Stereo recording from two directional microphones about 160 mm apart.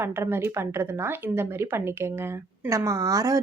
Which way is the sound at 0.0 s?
15° right (ahead or behind).